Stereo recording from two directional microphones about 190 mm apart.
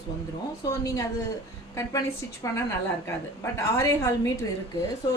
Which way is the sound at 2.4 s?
15° left (ahead or behind).